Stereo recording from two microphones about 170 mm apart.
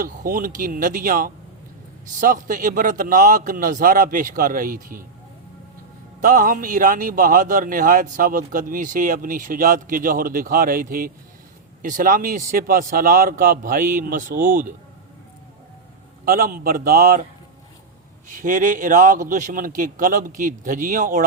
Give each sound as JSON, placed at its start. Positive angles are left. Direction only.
{"t": 0.0, "sound": "a man's voice", "side_deg": -55}
{"t": 6.2, "sound": "a man's voice", "side_deg": -55}
{"t": 16.2, "sound": "a man's voice", "side_deg": -60}
{"t": 18.3, "sound": "a man's voice", "side_deg": -50}